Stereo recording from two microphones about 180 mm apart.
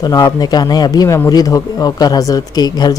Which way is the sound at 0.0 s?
20° left (ahead or behind).